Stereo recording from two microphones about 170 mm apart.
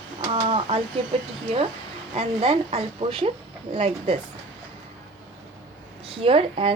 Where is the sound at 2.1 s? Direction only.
35° right (ahead or behind).